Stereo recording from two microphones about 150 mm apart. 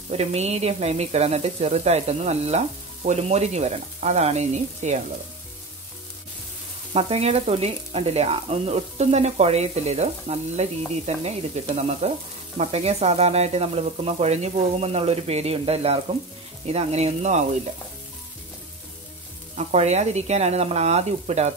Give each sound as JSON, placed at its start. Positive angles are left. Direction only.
{"t": 0.1, "sound": "speech", "side_deg": -45}
{"t": 6.9, "sound": "speech", "side_deg": -40}
{"t": 19.5, "sound": "speech", "side_deg": -50}